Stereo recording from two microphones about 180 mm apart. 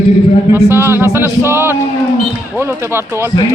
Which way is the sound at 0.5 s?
15° right (ahead or behind).